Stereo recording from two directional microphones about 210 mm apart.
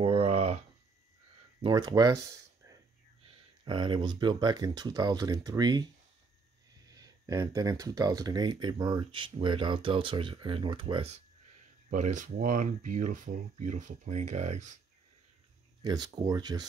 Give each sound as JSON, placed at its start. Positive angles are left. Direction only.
{"t": 0.0, "sound": "a sound", "side_deg": -25}
{"t": 1.6, "sound": "speech", "side_deg": -20}
{"t": 6.9, "sound": "speech", "side_deg": -15}
{"t": 15.8, "sound": "speech", "side_deg": -20}